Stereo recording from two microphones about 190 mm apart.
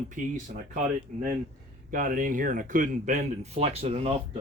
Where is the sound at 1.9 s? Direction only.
45° right (ahead or behind).